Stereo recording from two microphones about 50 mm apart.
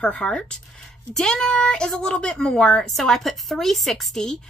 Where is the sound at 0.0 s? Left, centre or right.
Centre.